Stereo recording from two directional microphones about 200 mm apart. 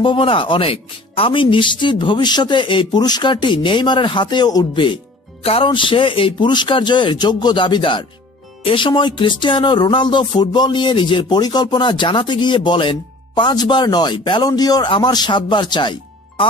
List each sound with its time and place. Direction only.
0.0 s speech: 25° left (ahead or behind)